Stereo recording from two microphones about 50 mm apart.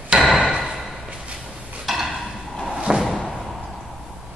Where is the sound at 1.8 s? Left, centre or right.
Centre.